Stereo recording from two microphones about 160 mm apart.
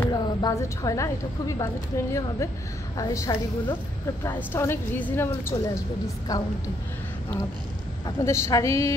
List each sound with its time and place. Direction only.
0.1 s a woman's voice: 20° left (ahead or behind)
8.2 s a woman's voice: 20° left (ahead or behind)